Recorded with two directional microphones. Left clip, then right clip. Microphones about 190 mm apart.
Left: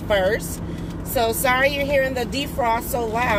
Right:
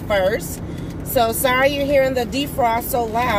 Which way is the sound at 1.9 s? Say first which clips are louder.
Right 4 dB; 15° right (ahead or behind).